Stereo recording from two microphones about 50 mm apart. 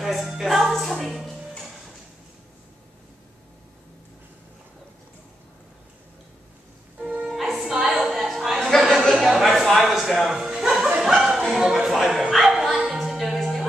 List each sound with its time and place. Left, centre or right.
0.0 s music: centre
1.0 s speech: centre
7.2 s music: centre
8.0 s a sound: centre
11.5 s music: centre